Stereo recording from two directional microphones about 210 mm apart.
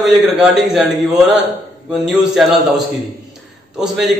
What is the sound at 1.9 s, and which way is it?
Speech, centre (ahead or behind).